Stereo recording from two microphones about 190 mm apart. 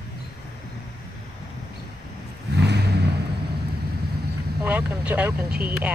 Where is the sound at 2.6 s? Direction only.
60° right (ahead or behind).